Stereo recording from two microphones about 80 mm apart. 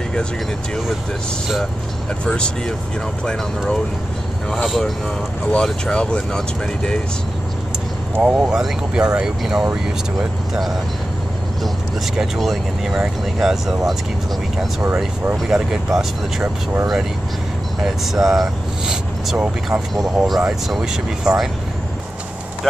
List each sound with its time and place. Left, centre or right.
2.2 s speech: centre
8.2 s speech: centre
12.2 s speech: centre
15.4 s speech: centre
17.8 s speech: centre
19.3 s speech: centre
19.9 s speech: centre